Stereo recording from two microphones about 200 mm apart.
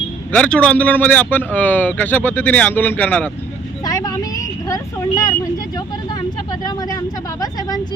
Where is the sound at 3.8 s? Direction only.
15° left (ahead or behind).